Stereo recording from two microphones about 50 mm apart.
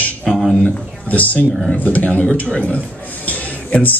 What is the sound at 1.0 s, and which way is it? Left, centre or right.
A man's voice, left.